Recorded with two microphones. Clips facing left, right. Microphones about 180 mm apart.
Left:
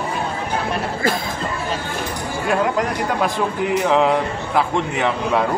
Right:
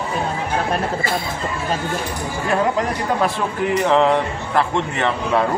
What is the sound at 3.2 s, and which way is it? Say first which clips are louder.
A man's voice: even; 5° left (ahead or behind).